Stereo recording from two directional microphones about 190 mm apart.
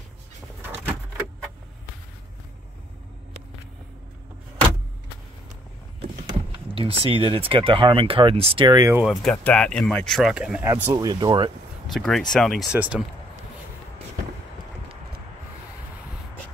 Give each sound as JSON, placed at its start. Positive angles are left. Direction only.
{"t": 6.5, "sound": "speech", "side_deg": -25}
{"t": 9.0, "sound": "speech", "side_deg": 0}
{"t": 10.7, "sound": "speech", "side_deg": -20}
{"t": 11.9, "sound": "speech", "side_deg": 0}